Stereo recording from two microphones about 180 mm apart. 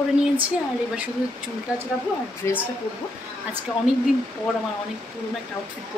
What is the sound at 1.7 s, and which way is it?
Speech, 5° right (ahead or behind).